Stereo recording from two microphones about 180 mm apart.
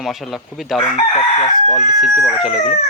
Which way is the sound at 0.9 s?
35° left (ahead or behind).